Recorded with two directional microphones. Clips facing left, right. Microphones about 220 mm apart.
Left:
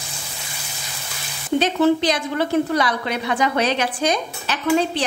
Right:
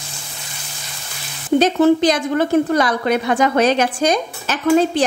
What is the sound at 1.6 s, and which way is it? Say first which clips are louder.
A woman's voice: right 4 dB; 45° right (ahead or behind).